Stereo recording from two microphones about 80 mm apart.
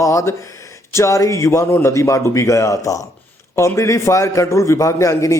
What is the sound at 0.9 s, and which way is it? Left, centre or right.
A man's voice, left.